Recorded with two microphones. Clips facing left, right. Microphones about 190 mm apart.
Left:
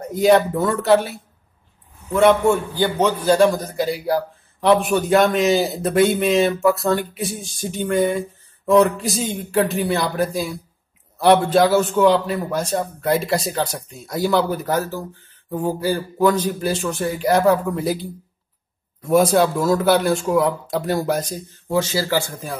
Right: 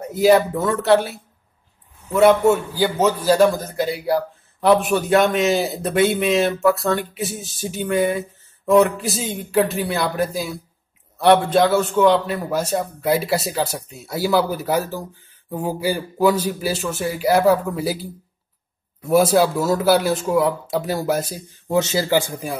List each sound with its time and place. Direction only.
0.0 s a man's voice: 5° right (ahead or behind)
21.6 s speech: 20° right (ahead or behind)